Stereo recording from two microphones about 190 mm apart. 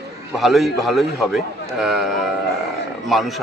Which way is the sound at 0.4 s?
Centre (ahead or behind).